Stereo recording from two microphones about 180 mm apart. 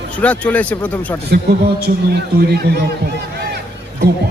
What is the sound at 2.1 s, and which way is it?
A man's voice, 65° right (ahead or behind).